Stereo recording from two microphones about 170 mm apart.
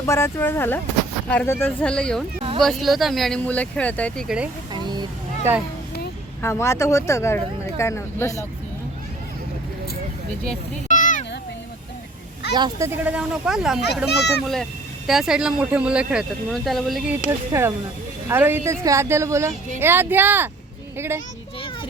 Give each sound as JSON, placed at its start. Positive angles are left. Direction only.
{"t": 0.0, "sound": "speech", "side_deg": 15}
{"t": 4.7, "sound": "a sound", "side_deg": -25}
{"t": 5.5, "sound": "a woman's voice", "side_deg": -15}
{"t": 6.4, "sound": "speech", "side_deg": 15}
{"t": 10.8, "sound": "meow", "side_deg": 50}
{"t": 12.5, "sound": "a woman's voice", "side_deg": -25}
{"t": 12.9, "sound": "speech", "side_deg": -5}
{"t": 14.1, "sound": "a child's voice", "side_deg": 75}
{"t": 14.4, "sound": "speech", "side_deg": 0}
{"t": 17.5, "sound": "a woman's voice", "side_deg": -15}